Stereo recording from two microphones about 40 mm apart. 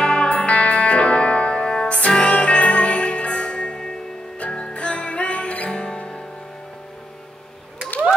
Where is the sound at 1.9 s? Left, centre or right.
Left.